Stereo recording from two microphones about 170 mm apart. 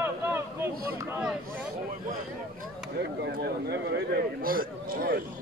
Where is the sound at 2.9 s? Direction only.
80° right.